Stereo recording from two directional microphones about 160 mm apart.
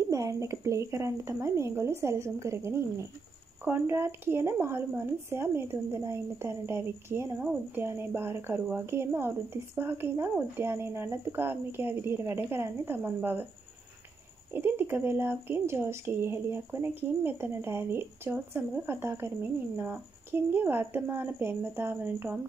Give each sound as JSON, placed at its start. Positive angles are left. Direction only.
{"t": 0.1, "sound": "a woman's voice", "side_deg": -20}
{"t": 14.5, "sound": "a woman's voice", "side_deg": -15}